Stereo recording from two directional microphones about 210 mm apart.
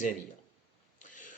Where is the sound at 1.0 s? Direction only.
40° left (ahead or behind).